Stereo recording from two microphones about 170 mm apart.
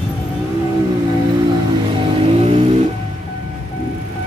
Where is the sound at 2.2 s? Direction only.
35° right (ahead or behind).